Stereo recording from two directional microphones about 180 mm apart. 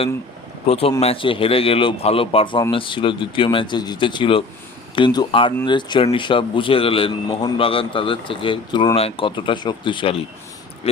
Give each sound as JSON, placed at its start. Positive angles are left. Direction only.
{"t": 0.7, "sound": "a man's voice", "side_deg": 35}